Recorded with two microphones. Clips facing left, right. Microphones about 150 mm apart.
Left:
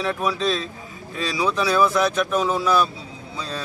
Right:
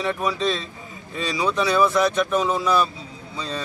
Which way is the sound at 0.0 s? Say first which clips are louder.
Even; centre (ahead or behind).